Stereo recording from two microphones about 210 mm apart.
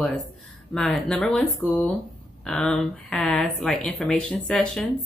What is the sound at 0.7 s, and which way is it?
Speech, 5° left (ahead or behind).